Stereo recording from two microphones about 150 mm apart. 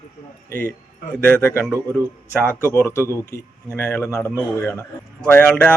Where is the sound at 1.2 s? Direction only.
15° left (ahead or behind).